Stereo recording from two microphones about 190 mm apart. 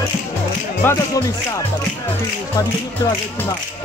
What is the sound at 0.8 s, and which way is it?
Music, 10° left (ahead or behind).